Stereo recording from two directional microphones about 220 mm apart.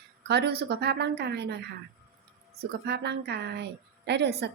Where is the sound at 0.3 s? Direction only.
50° right (ahead or behind).